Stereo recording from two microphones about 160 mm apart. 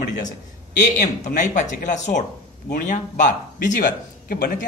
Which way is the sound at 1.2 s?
50° left (ahead or behind).